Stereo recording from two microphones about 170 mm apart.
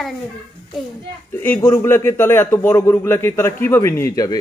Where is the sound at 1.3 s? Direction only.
15° left (ahead or behind).